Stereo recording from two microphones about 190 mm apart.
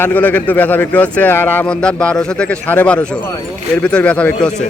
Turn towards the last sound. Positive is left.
turn(degrees=5)  # may be behind; listen again after turning